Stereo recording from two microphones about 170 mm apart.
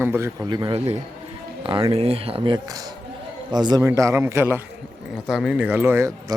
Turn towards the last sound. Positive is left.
turn(degrees=-15)  # may be behind; listen again after turning